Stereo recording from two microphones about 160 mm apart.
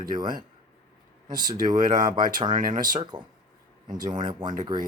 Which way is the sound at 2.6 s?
60° right (ahead or behind).